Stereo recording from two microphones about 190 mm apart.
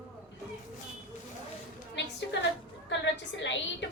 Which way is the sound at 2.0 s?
70° left (ahead or behind).